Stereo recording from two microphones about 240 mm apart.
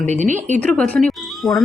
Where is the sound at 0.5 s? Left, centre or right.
Centre.